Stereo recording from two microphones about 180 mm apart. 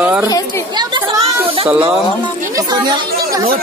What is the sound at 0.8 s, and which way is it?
Children playing, 25° right (ahead or behind).